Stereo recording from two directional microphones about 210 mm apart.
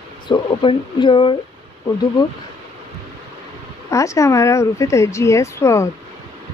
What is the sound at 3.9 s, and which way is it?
Speech, 15° left (ahead or behind).